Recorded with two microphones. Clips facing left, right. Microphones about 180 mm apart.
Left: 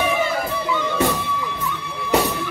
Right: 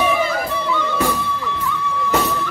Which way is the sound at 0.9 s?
20° left (ahead or behind).